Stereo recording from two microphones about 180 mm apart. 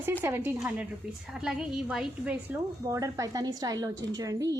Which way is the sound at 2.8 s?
20° right (ahead or behind).